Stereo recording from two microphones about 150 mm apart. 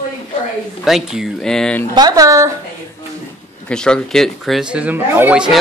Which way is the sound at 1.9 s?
25° right (ahead or behind).